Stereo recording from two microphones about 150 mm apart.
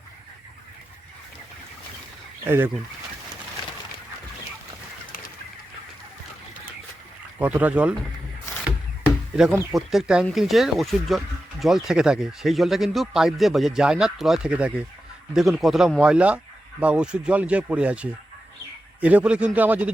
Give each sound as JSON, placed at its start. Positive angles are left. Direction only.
{"t": 2.4, "sound": "speech", "side_deg": -15}
{"t": 7.3, "sound": "speech", "side_deg": -10}
{"t": 9.3, "sound": "speech", "side_deg": 0}